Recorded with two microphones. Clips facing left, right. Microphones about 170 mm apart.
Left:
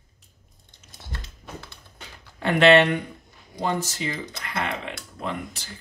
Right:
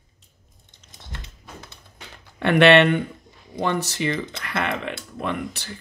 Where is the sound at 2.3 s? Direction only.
70° right (ahead or behind).